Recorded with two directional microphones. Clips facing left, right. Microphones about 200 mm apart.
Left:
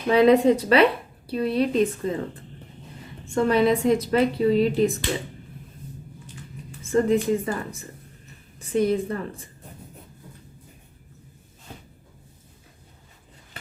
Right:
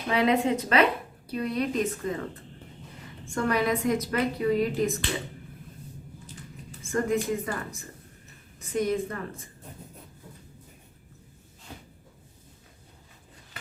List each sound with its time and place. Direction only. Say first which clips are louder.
0.1 s a woman's voice: left 8 dB; 35° left (ahead or behind)
3.3 s a woman's voice: left 6 dB; 25° left (ahead or behind)
6.9 s a woman's voice: left 6 dB; 25° left (ahead or behind)
8.7 s a woman's voice: left 5 dB; 30° left (ahead or behind)